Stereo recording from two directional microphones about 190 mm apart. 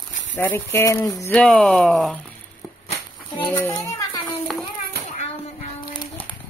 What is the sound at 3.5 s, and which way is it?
Speech, 10° left (ahead or behind).